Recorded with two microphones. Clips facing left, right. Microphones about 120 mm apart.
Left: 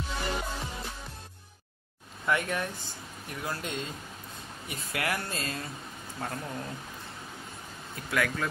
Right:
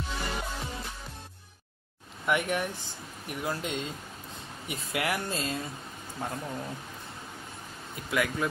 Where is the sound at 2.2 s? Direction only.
15° right (ahead or behind).